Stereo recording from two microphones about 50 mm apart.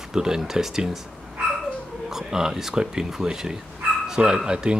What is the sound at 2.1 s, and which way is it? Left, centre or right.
Speech, centre.